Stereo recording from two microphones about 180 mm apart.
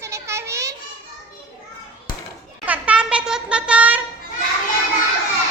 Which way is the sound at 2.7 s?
5° right (ahead or behind).